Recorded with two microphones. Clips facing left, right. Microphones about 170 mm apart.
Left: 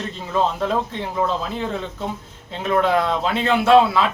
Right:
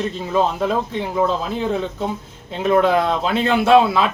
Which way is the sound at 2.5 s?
15° right (ahead or behind).